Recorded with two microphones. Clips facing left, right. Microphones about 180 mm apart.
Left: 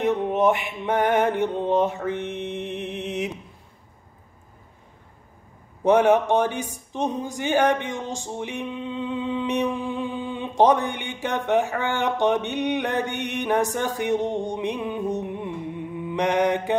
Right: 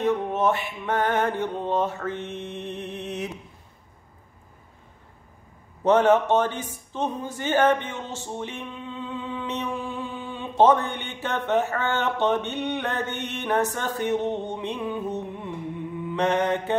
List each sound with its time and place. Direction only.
0.0 s speech: 15° left (ahead or behind)
5.9 s speech: 10° left (ahead or behind)